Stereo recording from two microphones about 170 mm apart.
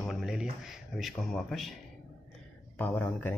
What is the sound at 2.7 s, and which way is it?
Speech, 10° left (ahead or behind).